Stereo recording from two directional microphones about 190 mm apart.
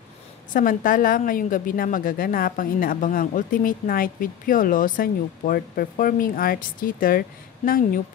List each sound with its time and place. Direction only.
0.5 s a woman's voice: 45° left (ahead or behind)